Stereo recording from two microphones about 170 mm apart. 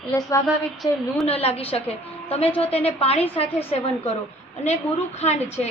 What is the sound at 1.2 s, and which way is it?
A woman's voice, 35° left (ahead or behind).